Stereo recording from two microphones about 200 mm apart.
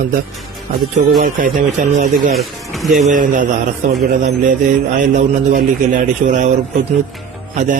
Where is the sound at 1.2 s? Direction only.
45° right (ahead or behind).